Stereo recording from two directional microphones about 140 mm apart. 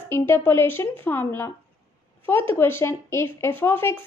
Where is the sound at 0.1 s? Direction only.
15° left (ahead or behind).